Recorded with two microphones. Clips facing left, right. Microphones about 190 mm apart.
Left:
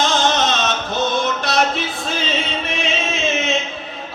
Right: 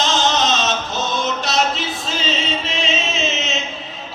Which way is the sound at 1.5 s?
55° left (ahead or behind).